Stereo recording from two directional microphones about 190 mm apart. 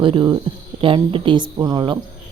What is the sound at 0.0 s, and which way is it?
A woman's voice, 25° right (ahead or behind).